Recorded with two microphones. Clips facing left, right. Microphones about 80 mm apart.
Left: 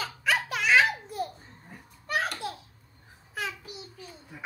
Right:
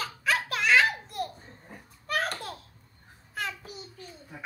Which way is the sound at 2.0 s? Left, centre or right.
Centre.